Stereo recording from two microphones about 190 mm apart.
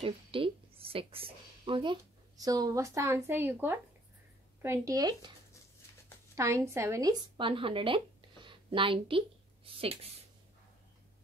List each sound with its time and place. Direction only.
0.0 s a woman's voice: 30° right (ahead or behind)
6.3 s speech: 15° right (ahead or behind)